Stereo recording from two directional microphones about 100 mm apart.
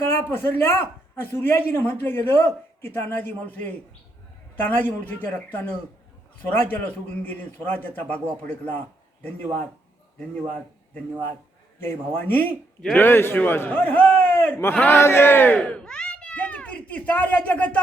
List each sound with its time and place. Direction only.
0.0 s a man's voice: 25° left (ahead or behind)
11.9 s a man's voice: 20° left (ahead or behind)
15.7 s a sound: 10° left (ahead or behind)